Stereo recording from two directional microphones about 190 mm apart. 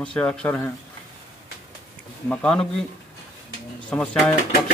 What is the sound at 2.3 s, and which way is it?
Speech, 5° left (ahead or behind).